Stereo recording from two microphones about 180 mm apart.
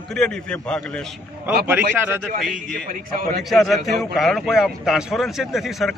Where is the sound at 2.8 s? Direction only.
50° right (ahead or behind).